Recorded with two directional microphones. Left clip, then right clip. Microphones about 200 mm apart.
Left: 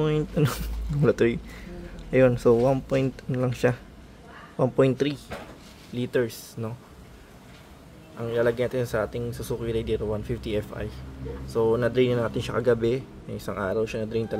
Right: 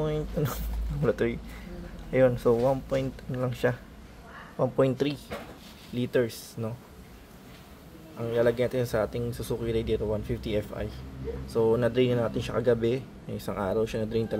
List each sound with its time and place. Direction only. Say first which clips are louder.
0.0 s speech: left 5 dB; 25° left (ahead or behind); by 6.7 s 5° left (ahead or behind)
8.2 s speech: left 1 dB; 5° left (ahead or behind)